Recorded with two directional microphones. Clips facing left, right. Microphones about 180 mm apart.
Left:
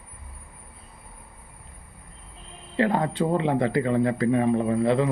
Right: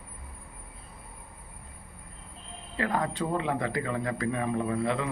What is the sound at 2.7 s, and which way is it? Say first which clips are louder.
Speech: left 6 dB; 25° left (ahead or behind).